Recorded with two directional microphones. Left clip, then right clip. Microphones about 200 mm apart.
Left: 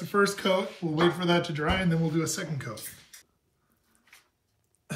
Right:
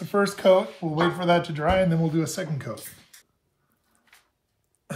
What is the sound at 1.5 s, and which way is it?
Speech, 35° right (ahead or behind).